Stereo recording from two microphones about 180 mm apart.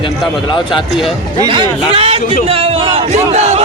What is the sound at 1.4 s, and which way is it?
Speech, 30° right (ahead or behind).